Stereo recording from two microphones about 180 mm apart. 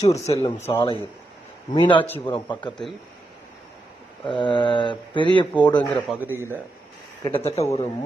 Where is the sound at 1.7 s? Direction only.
25° left (ahead or behind).